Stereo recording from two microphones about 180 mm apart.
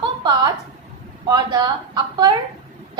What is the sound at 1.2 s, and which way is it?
A woman's voice, 25° right (ahead or behind).